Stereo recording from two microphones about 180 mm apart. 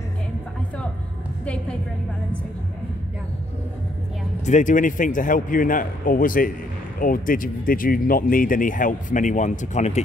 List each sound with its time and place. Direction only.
1.4 s music: 5° left (ahead or behind)
4.5 s speech: 45° left (ahead or behind)